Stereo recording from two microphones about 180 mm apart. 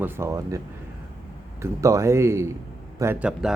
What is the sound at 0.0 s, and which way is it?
Speech, 15° right (ahead or behind).